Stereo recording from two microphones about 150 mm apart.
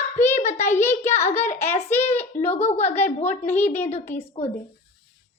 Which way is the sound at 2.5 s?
45° left (ahead or behind).